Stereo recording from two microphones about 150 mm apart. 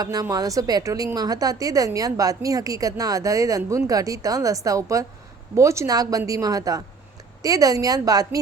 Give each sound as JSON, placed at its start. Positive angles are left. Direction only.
{"t": 0.0, "sound": "a woman's voice", "side_deg": -25}